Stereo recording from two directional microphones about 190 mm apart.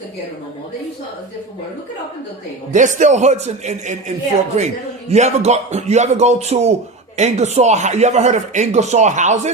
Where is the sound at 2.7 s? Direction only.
40° right (ahead or behind).